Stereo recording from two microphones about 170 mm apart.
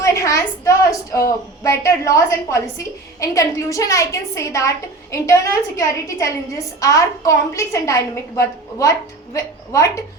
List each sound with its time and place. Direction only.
0.0 s a woman's voice: 20° left (ahead or behind)